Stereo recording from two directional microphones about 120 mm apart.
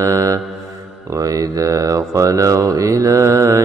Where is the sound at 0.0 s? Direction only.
25° right (ahead or behind).